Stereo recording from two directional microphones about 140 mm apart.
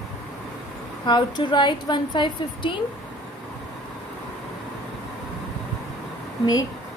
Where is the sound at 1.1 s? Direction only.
35° left (ahead or behind).